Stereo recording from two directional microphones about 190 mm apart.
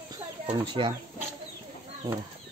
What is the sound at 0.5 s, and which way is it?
Speech, 25° right (ahead or behind).